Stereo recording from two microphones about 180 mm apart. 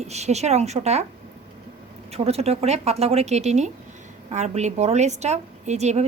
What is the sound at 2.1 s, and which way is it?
A woman's voice, 35° right (ahead or behind).